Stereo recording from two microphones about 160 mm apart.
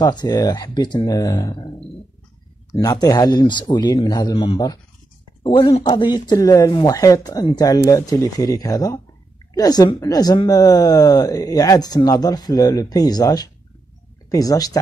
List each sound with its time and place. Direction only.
0.0 s speech: 25° left (ahead or behind)
2.8 s speech: 25° left (ahead or behind)